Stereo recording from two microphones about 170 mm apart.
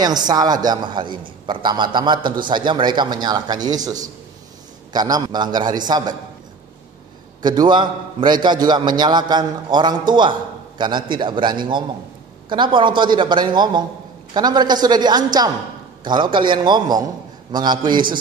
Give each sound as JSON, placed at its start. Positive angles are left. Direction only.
{"t": 0.0, "sound": "a man's voice", "side_deg": -25}
{"t": 7.4, "sound": "a man's voice", "side_deg": -25}